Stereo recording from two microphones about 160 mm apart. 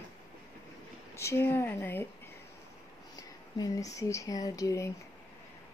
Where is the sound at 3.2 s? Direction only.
25° left (ahead or behind).